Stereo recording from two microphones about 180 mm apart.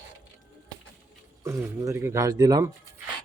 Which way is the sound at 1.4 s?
15° right (ahead or behind).